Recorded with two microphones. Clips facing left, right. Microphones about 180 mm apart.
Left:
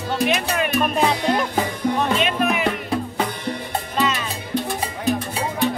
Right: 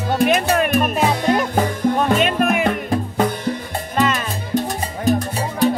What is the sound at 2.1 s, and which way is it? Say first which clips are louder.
Music: right 3 dB; 50° right (ahead or behind).